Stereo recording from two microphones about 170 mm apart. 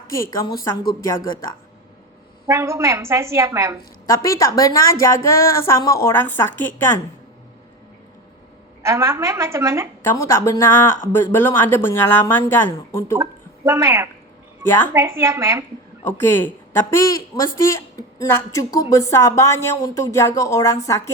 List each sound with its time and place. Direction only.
0.1 s a woman's voice: 20° left (ahead or behind)
2.5 s a woman's voice: 15° right (ahead or behind)
4.2 s a woman's voice: 20° left (ahead or behind)
8.8 s a woman's voice: 15° right (ahead or behind)
10.0 s a woman's voice: 15° left (ahead or behind)
13.7 s a woman's voice: 15° right (ahead or behind)
14.6 s a woman's voice: 10° left (ahead or behind)
14.9 s a woman's voice: 15° right (ahead or behind)
16.0 s a woman's voice: 10° left (ahead or behind)